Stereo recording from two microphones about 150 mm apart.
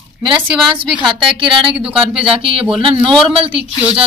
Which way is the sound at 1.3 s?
35° right (ahead or behind).